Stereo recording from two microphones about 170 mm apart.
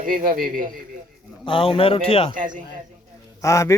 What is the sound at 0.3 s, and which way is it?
Speech, 55° right (ahead or behind).